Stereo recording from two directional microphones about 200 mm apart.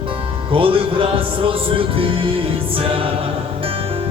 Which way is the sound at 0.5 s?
25° right (ahead or behind).